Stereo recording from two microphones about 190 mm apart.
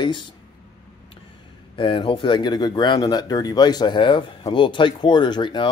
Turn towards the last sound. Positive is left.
turn(degrees=25)  # may be behind; listen again after turning